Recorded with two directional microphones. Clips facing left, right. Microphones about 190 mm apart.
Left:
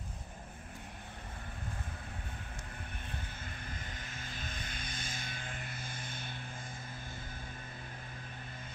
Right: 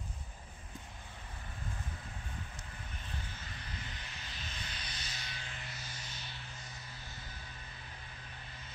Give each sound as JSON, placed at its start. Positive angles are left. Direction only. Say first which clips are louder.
{"t": 3.4, "sound": "vehicle", "louder": "left 2 dB", "side_deg": 45}